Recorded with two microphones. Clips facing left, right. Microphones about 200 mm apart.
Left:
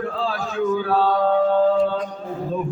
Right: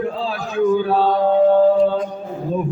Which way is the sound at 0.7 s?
20° right (ahead or behind).